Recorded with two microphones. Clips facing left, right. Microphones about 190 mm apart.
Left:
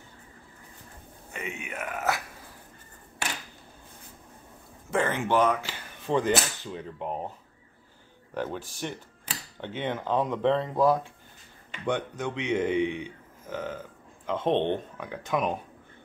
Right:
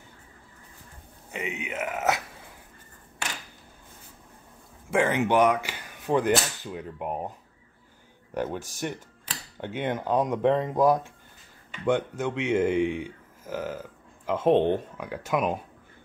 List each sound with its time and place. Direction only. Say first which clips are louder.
1.3 s speech: right 4 dB; 20° right (ahead or behind)
4.9 s speech: right 3 dB; 15° right (ahead or behind)
8.5 s speech: right 2 dB; 45° right (ahead or behind)
9.6 s speech: right 2 dB; 10° right (ahead or behind)